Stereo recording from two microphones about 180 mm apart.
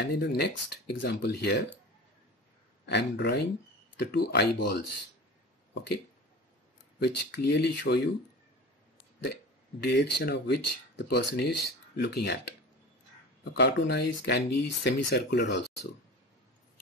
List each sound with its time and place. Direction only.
0.0 s speech: 65° left (ahead or behind)
2.9 s speech: 70° left (ahead or behind)
7.0 s speech: 65° left (ahead or behind)
9.8 s speech: 65° left (ahead or behind)